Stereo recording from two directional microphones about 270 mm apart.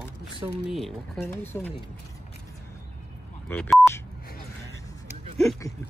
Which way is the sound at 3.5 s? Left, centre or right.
Centre.